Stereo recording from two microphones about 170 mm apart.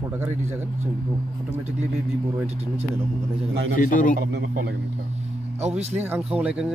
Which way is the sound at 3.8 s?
50° left (ahead or behind).